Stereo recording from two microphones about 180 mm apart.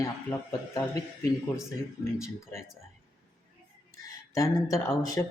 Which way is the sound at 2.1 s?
15° left (ahead or behind).